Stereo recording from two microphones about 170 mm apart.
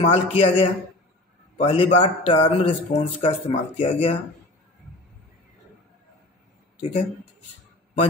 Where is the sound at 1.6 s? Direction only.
35° left (ahead or behind).